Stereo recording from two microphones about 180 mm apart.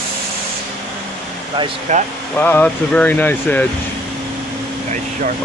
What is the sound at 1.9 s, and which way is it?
Speech, 40° right (ahead or behind).